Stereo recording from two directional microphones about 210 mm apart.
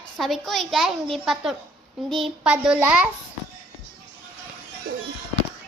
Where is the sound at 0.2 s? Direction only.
Centre (ahead or behind).